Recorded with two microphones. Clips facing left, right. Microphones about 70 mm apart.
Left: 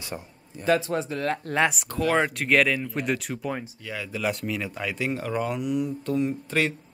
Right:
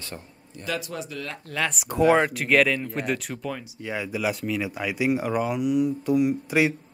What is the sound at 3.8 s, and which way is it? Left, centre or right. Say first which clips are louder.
Speech: right 4 dB; right.